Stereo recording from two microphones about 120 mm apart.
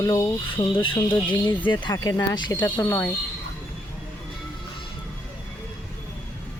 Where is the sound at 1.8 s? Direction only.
30° left (ahead or behind).